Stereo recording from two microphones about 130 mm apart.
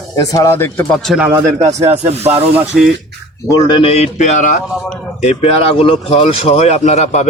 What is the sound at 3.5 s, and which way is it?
Speech, 30° left (ahead or behind).